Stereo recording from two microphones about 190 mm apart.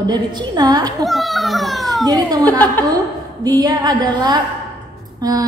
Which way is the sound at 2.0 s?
20° right (ahead or behind).